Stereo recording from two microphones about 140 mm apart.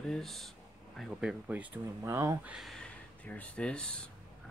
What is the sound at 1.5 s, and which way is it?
Speech, 10° right (ahead or behind).